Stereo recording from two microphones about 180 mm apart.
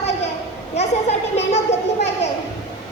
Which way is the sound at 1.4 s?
40° left (ahead or behind).